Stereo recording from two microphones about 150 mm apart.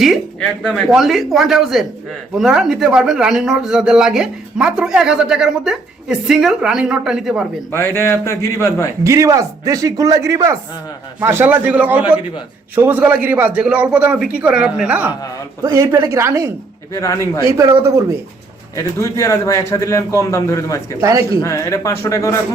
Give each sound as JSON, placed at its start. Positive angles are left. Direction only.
{"t": 0.0, "sound": "a man's voice", "side_deg": 0}
{"t": 7.7, "sound": "a man's voice", "side_deg": 15}
{"t": 9.0, "sound": "a man's voice", "side_deg": -20}
{"t": 16.9, "sound": "a man's voice", "side_deg": 20}
{"t": 17.6, "sound": "speech", "side_deg": -20}
{"t": 18.8, "sound": "a man's voice", "side_deg": 20}
{"t": 21.0, "sound": "speech", "side_deg": -20}
{"t": 21.4, "sound": "a man's voice", "side_deg": 20}